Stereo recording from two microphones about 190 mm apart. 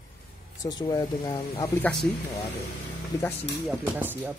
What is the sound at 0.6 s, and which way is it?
Speech, 20° left (ahead or behind).